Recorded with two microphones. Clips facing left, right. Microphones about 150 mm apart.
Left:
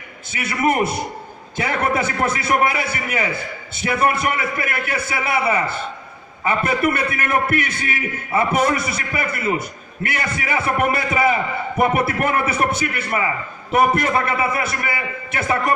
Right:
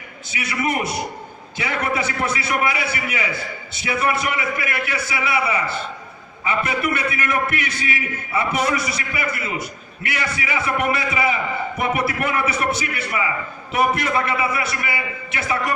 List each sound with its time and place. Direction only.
0.3 s a man's voice: 50° left (ahead or behind)